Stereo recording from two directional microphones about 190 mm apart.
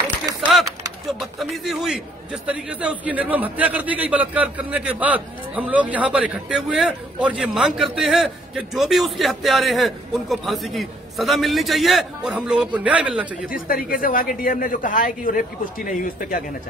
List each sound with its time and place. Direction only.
0.4 s typing: centre (ahead or behind)
1.2 s a man's voice: centre (ahead or behind)
13.5 s a man's voice: 50° left (ahead or behind)